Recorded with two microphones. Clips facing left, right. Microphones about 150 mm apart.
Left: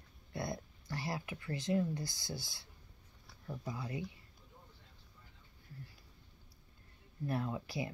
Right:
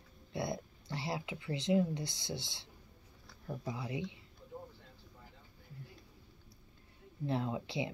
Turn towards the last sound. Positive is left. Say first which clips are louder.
# right 2 dB
turn(degrees=-25)  # may be behind; listen again after turning